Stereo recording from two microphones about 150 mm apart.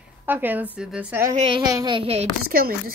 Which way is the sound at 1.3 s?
40° right (ahead or behind).